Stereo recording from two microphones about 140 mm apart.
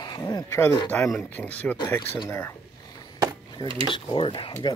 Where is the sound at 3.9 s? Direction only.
35° left (ahead or behind).